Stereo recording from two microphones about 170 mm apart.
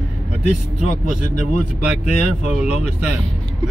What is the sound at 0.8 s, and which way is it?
Speech, 45° left (ahead or behind).